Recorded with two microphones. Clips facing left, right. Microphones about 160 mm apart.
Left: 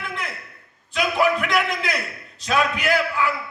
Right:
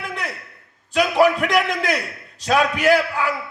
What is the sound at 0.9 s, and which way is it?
A man's voice, 40° right (ahead or behind).